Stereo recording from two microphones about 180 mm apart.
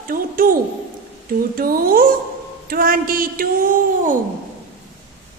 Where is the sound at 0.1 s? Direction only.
50° right (ahead or behind).